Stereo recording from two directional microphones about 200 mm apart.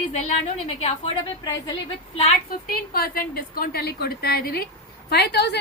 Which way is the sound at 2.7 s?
45° left (ahead or behind).